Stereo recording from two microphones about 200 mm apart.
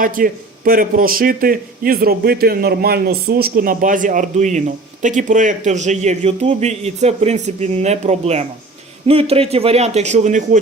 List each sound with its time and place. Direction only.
0.0 s a man's voice: 45° right (ahead or behind)